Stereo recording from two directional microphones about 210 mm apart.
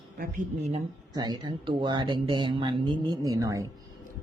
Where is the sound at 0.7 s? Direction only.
20° right (ahead or behind).